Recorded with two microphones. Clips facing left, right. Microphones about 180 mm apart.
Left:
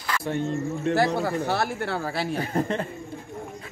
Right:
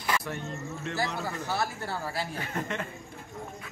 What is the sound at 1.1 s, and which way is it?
Speech, 65° left (ahead or behind).